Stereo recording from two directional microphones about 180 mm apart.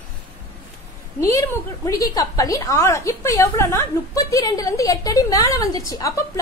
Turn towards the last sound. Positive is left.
turn(degrees=20)  # may be behind; listen again after turning